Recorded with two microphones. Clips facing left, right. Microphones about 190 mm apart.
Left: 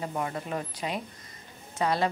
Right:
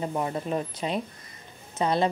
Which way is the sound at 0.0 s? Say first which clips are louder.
Right 4 dB; 25° right (ahead or behind).